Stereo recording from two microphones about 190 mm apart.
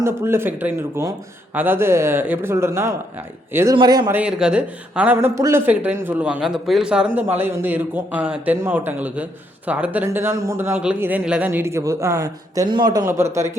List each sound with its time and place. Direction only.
0.0 s a man's voice: 15° right (ahead or behind)
4.1 s speech: 5° right (ahead or behind)